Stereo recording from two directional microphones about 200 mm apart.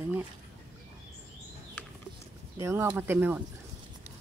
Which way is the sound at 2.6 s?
15° right (ahead or behind).